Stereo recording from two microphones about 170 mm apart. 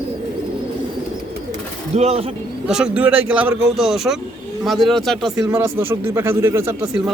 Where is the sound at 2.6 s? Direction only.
5° right (ahead or behind).